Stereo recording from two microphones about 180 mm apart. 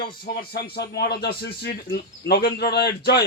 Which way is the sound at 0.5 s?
65° left (ahead or behind).